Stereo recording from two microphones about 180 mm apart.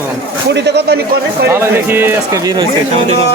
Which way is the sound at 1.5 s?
15° right (ahead or behind).